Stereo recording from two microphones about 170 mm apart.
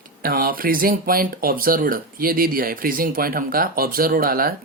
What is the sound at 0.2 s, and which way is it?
Speech, 55° right (ahead or behind).